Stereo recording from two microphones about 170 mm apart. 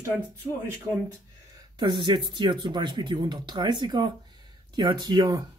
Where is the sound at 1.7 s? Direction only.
25° right (ahead or behind).